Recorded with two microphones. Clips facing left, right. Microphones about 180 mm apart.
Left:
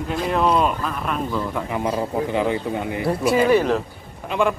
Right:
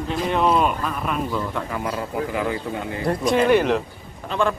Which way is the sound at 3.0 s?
5° left (ahead or behind).